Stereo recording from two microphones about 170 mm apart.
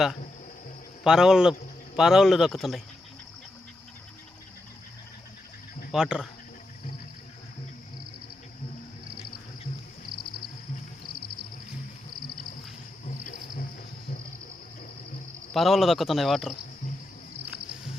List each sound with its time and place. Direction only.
1.0 s speech: 5° right (ahead or behind)
5.9 s speech: 5° right (ahead or behind)
13.1 s wild animals: 50° left (ahead or behind)
15.5 s speech: centre (ahead or behind)